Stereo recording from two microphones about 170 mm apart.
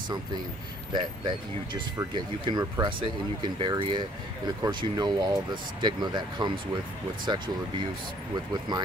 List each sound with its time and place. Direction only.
0.9 s speech: 25° right (ahead or behind)